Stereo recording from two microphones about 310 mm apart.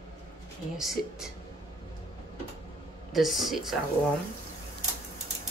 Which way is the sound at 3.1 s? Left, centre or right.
Centre.